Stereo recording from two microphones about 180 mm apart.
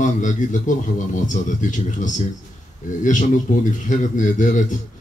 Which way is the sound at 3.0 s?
45° left (ahead or behind).